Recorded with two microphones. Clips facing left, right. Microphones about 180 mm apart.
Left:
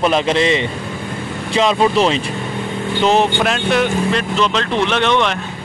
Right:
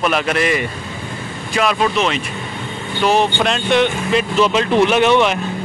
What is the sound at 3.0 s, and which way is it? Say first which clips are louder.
Speech: left 1 dB; 20° left (ahead or behind).